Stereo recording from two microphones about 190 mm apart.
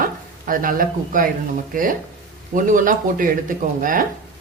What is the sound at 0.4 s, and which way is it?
Speech, 45° right (ahead or behind).